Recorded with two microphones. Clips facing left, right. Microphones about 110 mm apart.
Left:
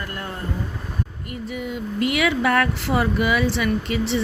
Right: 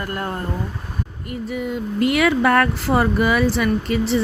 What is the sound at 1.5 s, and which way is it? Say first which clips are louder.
Speech: right 4 dB; 45° right (ahead or behind).